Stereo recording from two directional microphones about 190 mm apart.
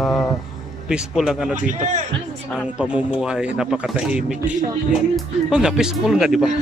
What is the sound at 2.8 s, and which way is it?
Speech, 5° right (ahead or behind).